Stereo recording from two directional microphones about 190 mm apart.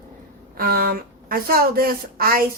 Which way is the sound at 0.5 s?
50° right (ahead or behind).